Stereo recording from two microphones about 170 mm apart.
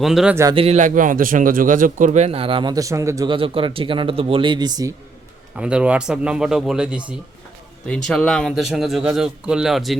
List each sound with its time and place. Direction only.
0.0 s speech: centre (ahead or behind)
0.5 s a man's voice: 35° right (ahead or behind); by 3.2 s 15° right (ahead or behind)
3.2 s a man's voice: 30° right (ahead or behind)
5.5 s speech: 5° right (ahead or behind)
7.9 s speech: 5° left (ahead or behind)